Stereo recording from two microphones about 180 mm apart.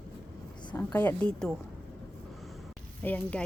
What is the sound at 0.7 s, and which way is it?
Speech, 10° left (ahead or behind).